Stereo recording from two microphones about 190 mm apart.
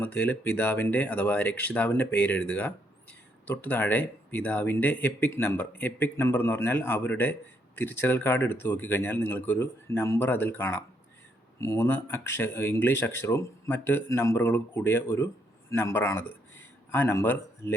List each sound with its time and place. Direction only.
0.0 s speech: 10° left (ahead or behind)